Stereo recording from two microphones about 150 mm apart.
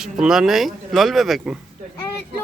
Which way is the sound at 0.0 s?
5° right (ahead or behind).